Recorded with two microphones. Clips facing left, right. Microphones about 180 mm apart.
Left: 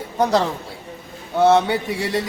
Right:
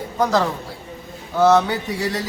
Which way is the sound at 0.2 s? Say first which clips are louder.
Left 1 dB; 25° left (ahead or behind).